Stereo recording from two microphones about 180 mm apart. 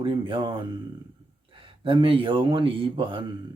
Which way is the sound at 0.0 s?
30° right (ahead or behind).